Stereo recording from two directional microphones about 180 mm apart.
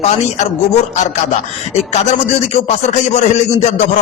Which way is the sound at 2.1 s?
35° left (ahead or behind).